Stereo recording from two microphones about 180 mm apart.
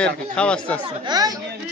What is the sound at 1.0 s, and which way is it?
Speech, 20° right (ahead or behind).